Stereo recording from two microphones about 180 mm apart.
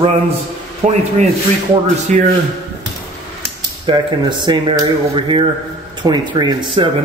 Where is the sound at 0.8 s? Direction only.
40° right (ahead or behind).